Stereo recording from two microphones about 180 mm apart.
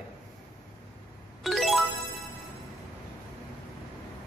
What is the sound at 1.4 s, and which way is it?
Music, centre (ahead or behind).